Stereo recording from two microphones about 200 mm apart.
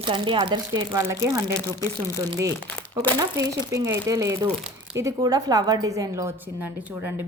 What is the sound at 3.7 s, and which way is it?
A woman's voice, 15° right (ahead or behind).